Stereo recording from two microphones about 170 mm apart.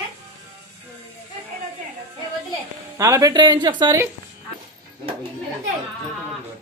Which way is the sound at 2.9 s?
20° right (ahead or behind).